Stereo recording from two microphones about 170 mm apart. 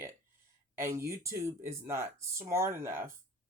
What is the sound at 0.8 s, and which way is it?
Speech, 15° right (ahead or behind).